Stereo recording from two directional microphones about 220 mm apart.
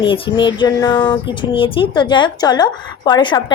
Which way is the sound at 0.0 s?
20° left (ahead or behind).